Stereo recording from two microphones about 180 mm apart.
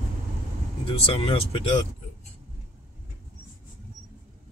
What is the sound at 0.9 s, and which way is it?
Speech, 30° left (ahead or behind).